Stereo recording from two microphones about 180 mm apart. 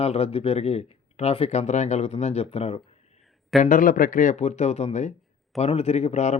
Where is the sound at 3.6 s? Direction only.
45° left (ahead or behind).